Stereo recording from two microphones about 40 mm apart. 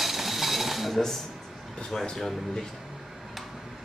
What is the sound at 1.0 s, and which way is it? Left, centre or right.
Dishes, centre.